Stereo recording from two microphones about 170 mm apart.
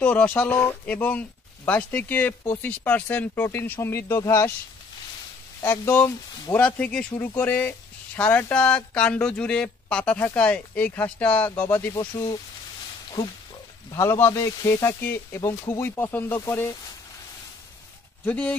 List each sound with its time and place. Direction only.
0.0 s speech: 10° left (ahead or behind)
5.6 s speech: 15° left (ahead or behind)
11.9 s speech: 25° left (ahead or behind)
13.8 s speech: 15° left (ahead or behind)
18.2 s speech: 10° left (ahead or behind)